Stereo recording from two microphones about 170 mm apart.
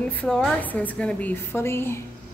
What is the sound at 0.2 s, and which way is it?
Speech, 5° left (ahead or behind).